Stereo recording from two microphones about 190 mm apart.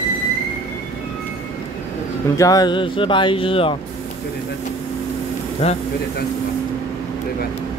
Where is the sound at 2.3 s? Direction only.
20° left (ahead or behind).